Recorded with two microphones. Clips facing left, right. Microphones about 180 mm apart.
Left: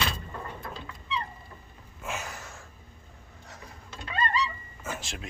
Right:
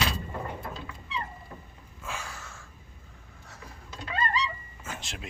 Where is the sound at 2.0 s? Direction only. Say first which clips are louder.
Left 3 dB; 20° left (ahead or behind).